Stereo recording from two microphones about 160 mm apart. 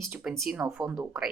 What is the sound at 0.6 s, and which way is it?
Speech, 15° right (ahead or behind).